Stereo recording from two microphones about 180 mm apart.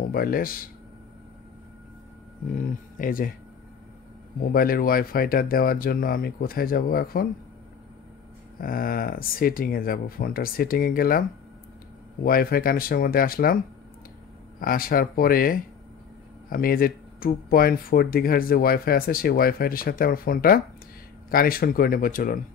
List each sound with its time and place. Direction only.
0.1 s speech: 55° left (ahead or behind)
2.5 s speech: 50° left (ahead or behind)
4.4 s speech: 55° left (ahead or behind)
8.5 s speech: 50° left (ahead or behind)
14.6 s speech: 55° left (ahead or behind)